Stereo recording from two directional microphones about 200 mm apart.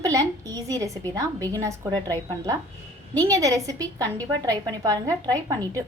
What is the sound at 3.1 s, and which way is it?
A woman's voice, 15° right (ahead or behind).